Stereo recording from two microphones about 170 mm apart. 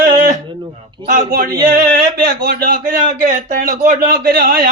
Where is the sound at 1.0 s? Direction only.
50° right (ahead or behind).